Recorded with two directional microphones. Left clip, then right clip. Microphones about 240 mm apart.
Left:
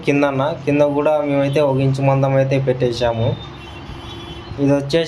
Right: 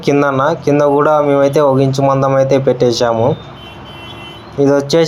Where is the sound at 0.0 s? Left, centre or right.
Right.